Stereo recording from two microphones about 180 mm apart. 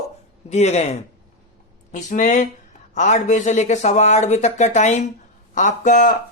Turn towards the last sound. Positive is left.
turn(degrees=45)  # may be behind; listen again after turning